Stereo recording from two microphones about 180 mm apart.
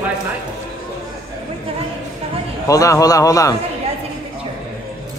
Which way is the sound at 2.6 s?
20° left (ahead or behind).